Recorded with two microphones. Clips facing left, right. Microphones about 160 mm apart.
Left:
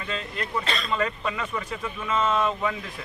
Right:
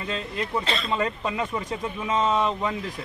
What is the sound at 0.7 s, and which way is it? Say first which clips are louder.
A man's voice: right 1 dB; 25° right (ahead or behind).